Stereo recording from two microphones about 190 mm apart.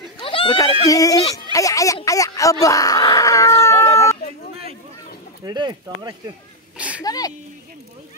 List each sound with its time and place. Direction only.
0.2 s speech: 30° left (ahead or behind)
2.0 s a sound: 15° left (ahead or behind)
5.4 s speech: 20° right (ahead or behind)
7.0 s speech: 20° left (ahead or behind)